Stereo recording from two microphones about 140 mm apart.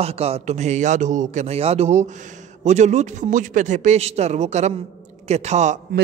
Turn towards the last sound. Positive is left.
turn(degrees=-55)  # may be behind; listen again after turning